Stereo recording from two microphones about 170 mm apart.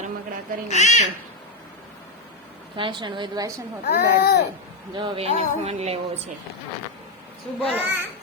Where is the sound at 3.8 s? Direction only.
70° left (ahead or behind).